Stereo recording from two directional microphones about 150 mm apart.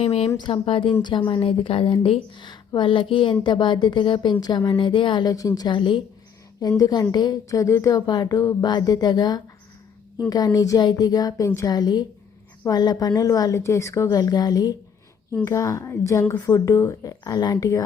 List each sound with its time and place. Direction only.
0.0 s a woman's voice: 40° left (ahead or behind)
0.3 s a woman's voice: 30° left (ahead or behind)